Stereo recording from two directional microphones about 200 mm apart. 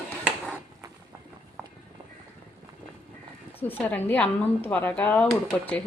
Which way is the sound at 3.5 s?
10° left (ahead or behind).